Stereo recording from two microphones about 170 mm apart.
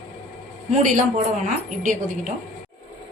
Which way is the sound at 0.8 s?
50° right (ahead or behind).